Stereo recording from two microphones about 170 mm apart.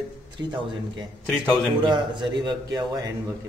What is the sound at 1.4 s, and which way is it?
Speech, centre (ahead or behind).